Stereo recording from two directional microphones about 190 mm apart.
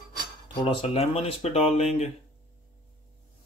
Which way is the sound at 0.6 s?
25° left (ahead or behind).